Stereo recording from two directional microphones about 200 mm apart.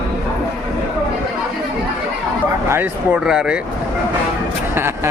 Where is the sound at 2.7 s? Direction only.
10° right (ahead or behind).